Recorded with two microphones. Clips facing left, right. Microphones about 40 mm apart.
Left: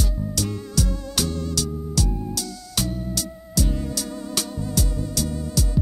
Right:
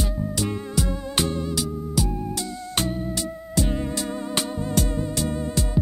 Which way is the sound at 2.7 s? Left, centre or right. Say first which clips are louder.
Right 1 dB; right.